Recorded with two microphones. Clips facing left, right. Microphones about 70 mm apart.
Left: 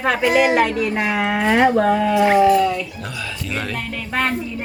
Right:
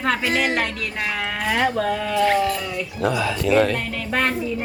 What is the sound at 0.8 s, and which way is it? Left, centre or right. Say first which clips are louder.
Speech: left 6 dB; left.